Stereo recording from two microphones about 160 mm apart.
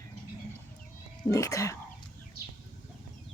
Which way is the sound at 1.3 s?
20° left (ahead or behind).